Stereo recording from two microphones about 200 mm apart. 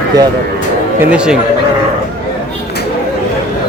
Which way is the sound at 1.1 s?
5° right (ahead or behind).